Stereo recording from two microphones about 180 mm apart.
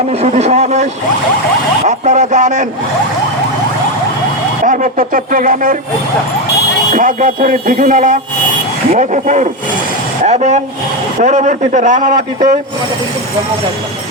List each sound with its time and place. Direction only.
0.1 s speech: 35° right (ahead or behind)
1.9 s speech: 40° right (ahead or behind)
4.6 s a man's voice: 45° right (ahead or behind)
6.9 s a man's voice: 45° right (ahead or behind)